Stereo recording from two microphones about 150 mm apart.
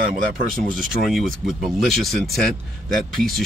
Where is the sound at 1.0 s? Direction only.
Centre (ahead or behind).